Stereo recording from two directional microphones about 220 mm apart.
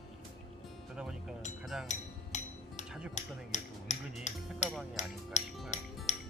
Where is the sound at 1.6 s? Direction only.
Centre (ahead or behind).